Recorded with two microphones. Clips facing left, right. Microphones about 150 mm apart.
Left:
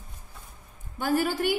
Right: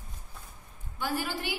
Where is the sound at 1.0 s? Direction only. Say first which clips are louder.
Left 7 dB; 45° left (ahead or behind).